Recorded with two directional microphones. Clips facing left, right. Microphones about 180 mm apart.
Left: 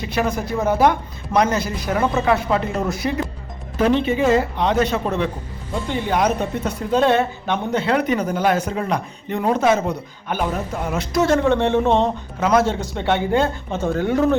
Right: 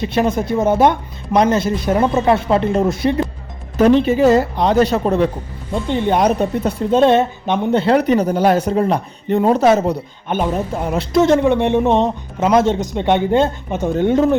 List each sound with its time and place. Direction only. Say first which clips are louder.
0.1 s a man's voice: right 3 dB; 25° right (ahead or behind)
3.8 s a man's voice: right 6 dB; 40° right (ahead or behind); by 7.8 s 20° right (ahead or behind)
7.8 s speech: right 6 dB; 35° right (ahead or behind)
10.2 s a man's voice: right 4 dB; 25° right (ahead or behind)